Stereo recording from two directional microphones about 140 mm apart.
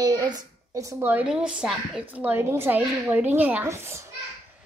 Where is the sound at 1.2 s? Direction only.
5° right (ahead or behind).